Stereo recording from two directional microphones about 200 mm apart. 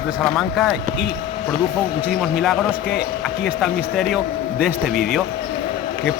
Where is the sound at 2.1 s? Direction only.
Centre (ahead or behind).